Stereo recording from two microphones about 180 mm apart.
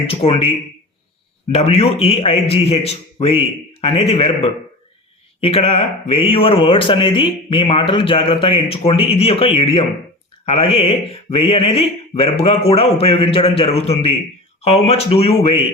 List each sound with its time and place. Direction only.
0.1 s speech: 30° left (ahead or behind)
1.5 s speech: 35° left (ahead or behind)